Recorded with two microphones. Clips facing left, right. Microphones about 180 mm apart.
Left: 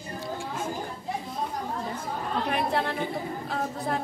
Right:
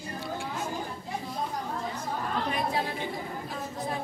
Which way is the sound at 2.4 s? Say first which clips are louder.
Left 5 dB; 65° left (ahead or behind).